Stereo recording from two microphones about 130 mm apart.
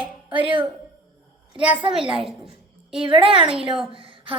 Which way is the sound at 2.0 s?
45° right (ahead or behind).